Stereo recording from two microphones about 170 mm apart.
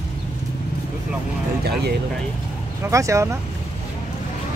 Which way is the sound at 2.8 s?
20° right (ahead or behind).